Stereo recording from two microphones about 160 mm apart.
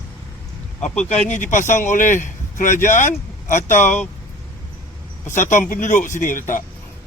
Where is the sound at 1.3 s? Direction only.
50° left (ahead or behind).